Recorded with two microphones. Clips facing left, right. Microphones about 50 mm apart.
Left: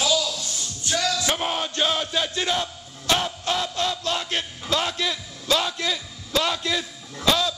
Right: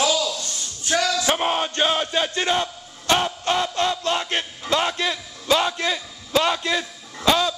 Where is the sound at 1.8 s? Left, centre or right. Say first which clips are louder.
Right 1 dB; right.